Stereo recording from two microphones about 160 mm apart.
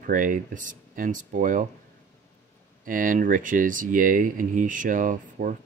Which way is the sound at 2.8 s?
60° right (ahead or behind).